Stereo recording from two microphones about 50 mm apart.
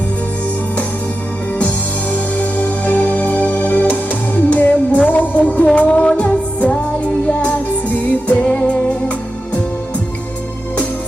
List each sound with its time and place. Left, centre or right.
1.5 s music: left